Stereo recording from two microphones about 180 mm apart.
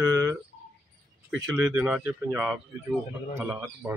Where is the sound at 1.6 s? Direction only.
5° right (ahead or behind).